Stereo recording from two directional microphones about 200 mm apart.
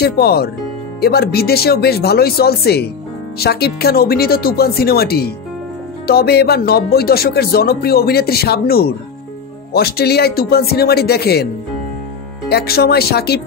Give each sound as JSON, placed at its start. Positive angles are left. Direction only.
{"t": 0.0, "sound": "speech", "side_deg": 50}
{"t": 12.4, "sound": "speech", "side_deg": 50}